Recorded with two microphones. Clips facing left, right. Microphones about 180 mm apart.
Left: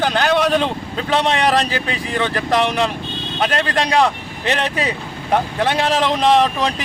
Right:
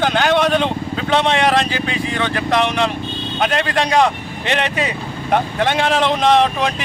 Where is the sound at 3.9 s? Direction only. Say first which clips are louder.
Right 1 dB; centre (ahead or behind).